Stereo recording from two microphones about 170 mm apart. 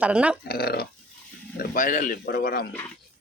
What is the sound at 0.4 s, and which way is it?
Speech, 65° left (ahead or behind).